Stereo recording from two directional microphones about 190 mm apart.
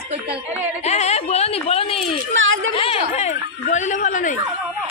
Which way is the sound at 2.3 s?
90° right.